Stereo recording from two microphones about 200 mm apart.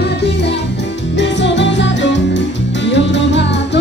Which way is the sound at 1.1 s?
60° left (ahead or behind).